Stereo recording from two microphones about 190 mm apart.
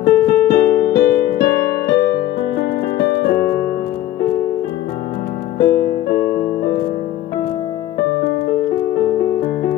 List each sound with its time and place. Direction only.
0.0 s piano: 50° left (ahead or behind)
3.1 s music: 50° left (ahead or behind)
5.6 s music: 50° left (ahead or behind)